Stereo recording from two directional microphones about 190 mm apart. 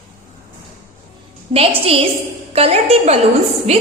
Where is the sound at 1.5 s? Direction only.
30° right (ahead or behind).